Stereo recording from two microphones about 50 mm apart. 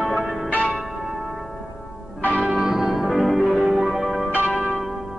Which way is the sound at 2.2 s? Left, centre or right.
Right.